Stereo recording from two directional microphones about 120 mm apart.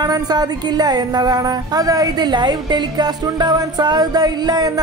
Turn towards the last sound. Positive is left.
turn(degrees=-35)  # may be behind; listen again after turning